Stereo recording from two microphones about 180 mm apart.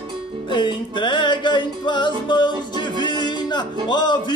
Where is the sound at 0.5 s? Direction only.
25° left (ahead or behind).